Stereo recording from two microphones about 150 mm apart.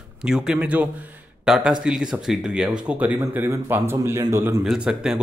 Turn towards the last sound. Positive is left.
turn(degrees=-5)  # may be behind; listen again after turning